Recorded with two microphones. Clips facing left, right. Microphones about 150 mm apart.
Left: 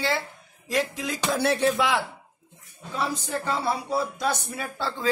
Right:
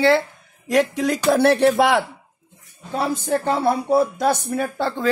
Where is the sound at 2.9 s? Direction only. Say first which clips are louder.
Right 7 dB; 55° right (ahead or behind).